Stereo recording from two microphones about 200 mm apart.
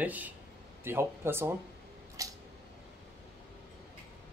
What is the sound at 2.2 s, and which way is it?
Scissors, 15° right (ahead or behind).